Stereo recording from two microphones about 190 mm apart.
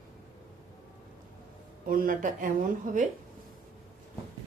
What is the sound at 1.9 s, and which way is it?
Speech, 45° right (ahead or behind).